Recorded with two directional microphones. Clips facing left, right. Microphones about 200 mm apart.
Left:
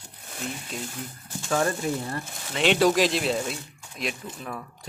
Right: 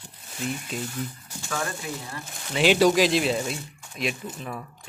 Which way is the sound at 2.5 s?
Centre (ahead or behind).